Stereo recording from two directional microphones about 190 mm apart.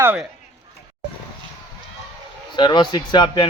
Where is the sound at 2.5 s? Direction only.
25° left (ahead or behind).